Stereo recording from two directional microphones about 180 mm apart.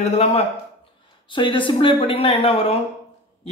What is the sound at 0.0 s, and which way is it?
Speech, 35° left (ahead or behind).